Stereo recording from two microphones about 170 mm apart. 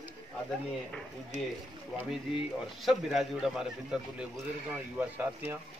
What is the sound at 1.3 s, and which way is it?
Speech, 45° right (ahead or behind).